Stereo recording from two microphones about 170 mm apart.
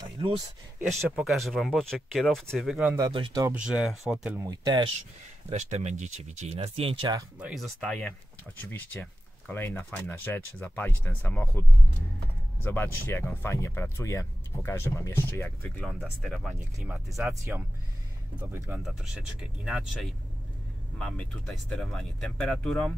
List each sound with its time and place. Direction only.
1.1 s speech: centre (ahead or behind)
3.0 s speech: 25° right (ahead or behind)
3.4 s speech: 5° right (ahead or behind)
4.4 s speech: 20° right (ahead or behind)
5.5 s speech: 40° right (ahead or behind)
7.3 s speech: 5° right (ahead or behind)
12.6 s speech: 10° left (ahead or behind)
15.8 s speech: centre (ahead or behind)
17.2 s speech: 15° right (ahead or behind); by 22.9 s 5° left (ahead or behind)